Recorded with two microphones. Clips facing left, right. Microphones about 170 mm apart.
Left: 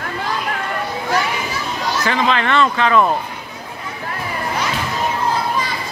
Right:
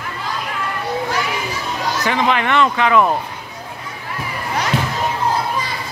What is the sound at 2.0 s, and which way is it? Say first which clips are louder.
Speech: right 1 dB; 15° right (ahead or behind).